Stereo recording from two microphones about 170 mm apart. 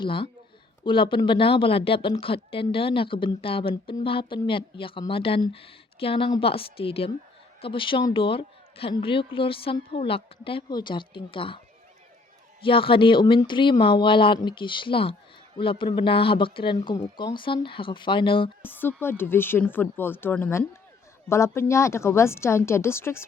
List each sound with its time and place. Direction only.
0.0 s speech: 30° left (ahead or behind)
12.6 s speech: 30° left (ahead or behind)
18.6 s speech: 10° left (ahead or behind)